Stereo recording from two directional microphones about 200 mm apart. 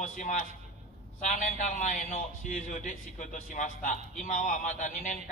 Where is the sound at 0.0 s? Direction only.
40° left (ahead or behind).